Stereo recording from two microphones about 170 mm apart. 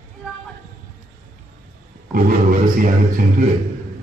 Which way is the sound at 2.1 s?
55° right (ahead or behind).